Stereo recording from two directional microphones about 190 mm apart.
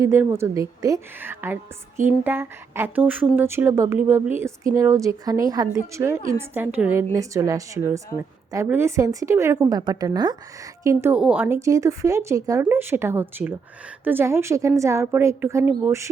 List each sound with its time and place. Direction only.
0.0 s speech: 15° right (ahead or behind)